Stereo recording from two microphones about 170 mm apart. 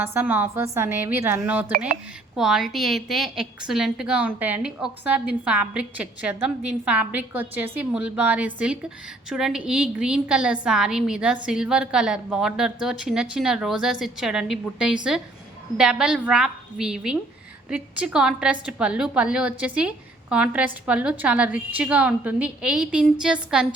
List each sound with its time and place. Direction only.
0.0 s a woman's voice: 10° right (ahead or behind)